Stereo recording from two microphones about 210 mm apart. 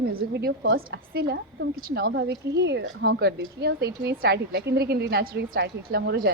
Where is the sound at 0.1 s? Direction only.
50° right (ahead or behind).